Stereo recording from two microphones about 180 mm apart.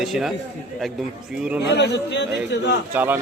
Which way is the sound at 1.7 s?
70° left (ahead or behind).